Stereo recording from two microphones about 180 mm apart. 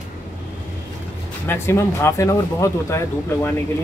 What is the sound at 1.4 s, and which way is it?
Speech, 15° left (ahead or behind).